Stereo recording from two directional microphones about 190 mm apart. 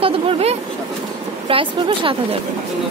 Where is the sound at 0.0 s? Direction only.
30° right (ahead or behind).